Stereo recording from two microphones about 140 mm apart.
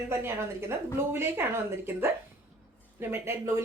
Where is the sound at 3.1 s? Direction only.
20° right (ahead or behind).